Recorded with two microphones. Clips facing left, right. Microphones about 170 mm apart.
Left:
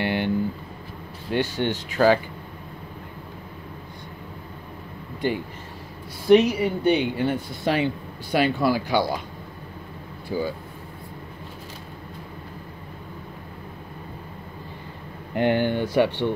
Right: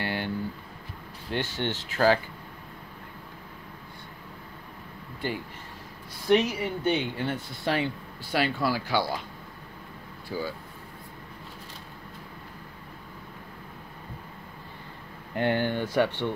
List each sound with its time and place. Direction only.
0.0 s a sound: 20° left (ahead or behind)
1.3 s speech: 15° left (ahead or behind)
5.2 s speech: 15° left (ahead or behind)
10.3 s speech: 20° left (ahead or behind)
15.3 s speech: 20° left (ahead or behind)